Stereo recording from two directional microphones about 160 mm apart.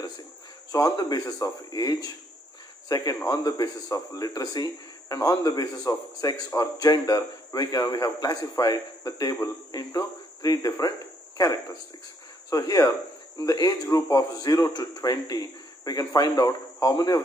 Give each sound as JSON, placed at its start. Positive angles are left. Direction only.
{"t": 0.7, "sound": "a man's voice", "side_deg": 20}
{"t": 12.4, "sound": "a man's voice", "side_deg": 20}